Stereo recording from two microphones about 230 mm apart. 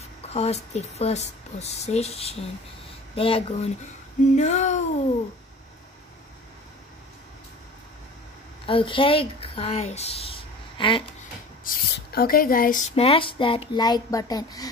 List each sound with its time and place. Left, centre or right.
0.3 s speech: left
4.2 s a sound: left
8.6 s speech: left
11.6 s speech: left; by 14.7 s centre